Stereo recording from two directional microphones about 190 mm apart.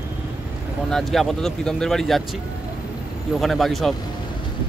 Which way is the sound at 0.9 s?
Centre (ahead or behind).